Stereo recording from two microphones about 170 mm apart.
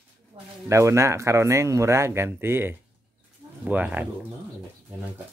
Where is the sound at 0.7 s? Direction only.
15° right (ahead or behind).